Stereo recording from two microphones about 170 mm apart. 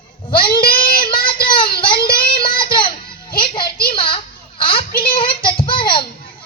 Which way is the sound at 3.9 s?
30° left (ahead or behind).